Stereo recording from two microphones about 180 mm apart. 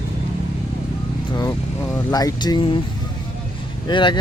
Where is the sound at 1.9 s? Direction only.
20° left (ahead or behind).